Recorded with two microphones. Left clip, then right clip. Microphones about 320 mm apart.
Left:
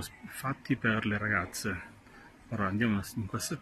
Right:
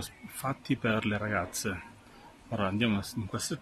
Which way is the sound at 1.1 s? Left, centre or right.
Right.